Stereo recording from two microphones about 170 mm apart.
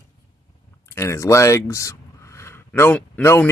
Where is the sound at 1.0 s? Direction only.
15° left (ahead or behind).